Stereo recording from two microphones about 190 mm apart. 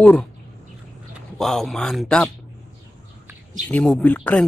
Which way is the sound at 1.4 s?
Centre (ahead or behind).